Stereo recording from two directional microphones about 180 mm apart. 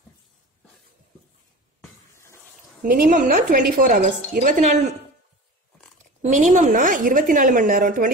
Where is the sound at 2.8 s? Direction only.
50° right (ahead or behind).